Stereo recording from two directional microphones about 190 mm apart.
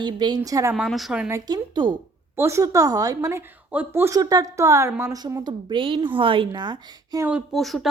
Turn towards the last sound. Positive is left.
turn(degrees=0)  # may be behind; listen again after turning